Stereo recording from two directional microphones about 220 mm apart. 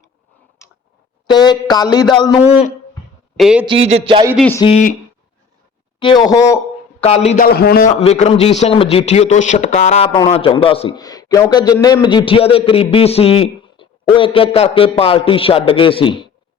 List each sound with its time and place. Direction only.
1.3 s a man's voice: 20° left (ahead or behind)
3.3 s a man's voice: 5° right (ahead or behind)
3.7 s a sound: 25° right (ahead or behind)
4.4 s speech: 10° left (ahead or behind)
4.6 s a man's voice: 30° left (ahead or behind)
6.0 s a man's voice: 20° left (ahead or behind)
7.0 s a man's voice: 25° left (ahead or behind)
7.4 s a man's voice: 45° left (ahead or behind); by 16.3 s 20° left (ahead or behind)